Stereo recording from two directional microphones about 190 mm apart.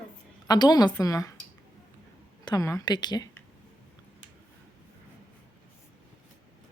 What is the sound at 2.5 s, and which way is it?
Speech, 15° left (ahead or behind).